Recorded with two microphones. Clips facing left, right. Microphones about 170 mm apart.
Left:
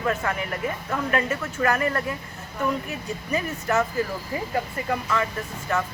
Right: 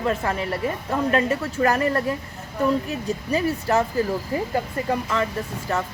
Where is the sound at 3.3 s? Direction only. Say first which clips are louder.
Right 3 dB; 35° right (ahead or behind).